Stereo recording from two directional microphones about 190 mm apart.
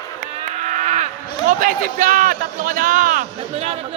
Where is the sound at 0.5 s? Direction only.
40° right (ahead or behind).